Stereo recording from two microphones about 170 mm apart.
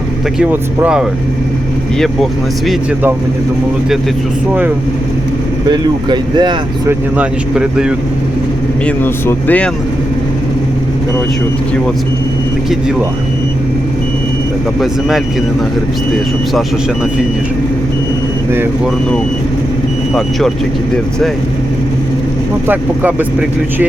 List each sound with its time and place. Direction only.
0.3 s speech: 10° right (ahead or behind)
5.6 s speech: 25° right (ahead or behind)
6.8 s speech: 5° right (ahead or behind)
9.0 s speech: 10° left (ahead or behind)
22.6 s speech: 10° right (ahead or behind)